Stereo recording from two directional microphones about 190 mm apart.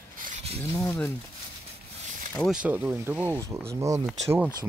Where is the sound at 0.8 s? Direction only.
10° left (ahead or behind).